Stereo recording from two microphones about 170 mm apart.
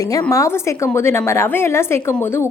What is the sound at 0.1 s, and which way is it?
A woman's voice, 20° left (ahead or behind).